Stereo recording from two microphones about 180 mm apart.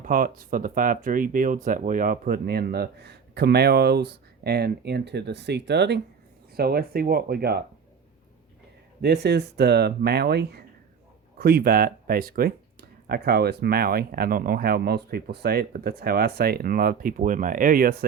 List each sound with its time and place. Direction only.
0.0 s speech: 50° right (ahead or behind); by 6.0 s 70° right (ahead or behind)
6.5 s speech: 60° right (ahead or behind)
9.0 s speech: 65° right (ahead or behind)